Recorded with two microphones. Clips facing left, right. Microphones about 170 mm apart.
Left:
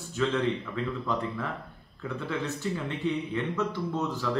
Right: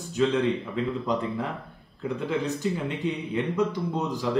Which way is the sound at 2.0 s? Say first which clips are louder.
Right 5 dB; 15° right (ahead or behind).